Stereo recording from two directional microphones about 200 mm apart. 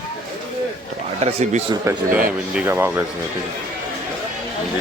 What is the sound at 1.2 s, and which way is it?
Speech, 30° right (ahead or behind).